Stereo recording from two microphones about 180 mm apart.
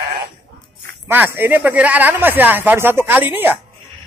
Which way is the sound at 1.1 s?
10° right (ahead or behind).